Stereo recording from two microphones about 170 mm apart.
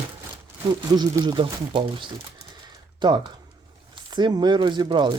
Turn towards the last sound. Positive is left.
turn(degrees=-25)  # may be behind; listen again after turning